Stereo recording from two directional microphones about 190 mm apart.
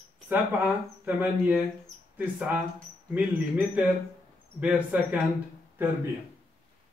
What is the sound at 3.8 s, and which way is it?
Speech, 10° right (ahead or behind).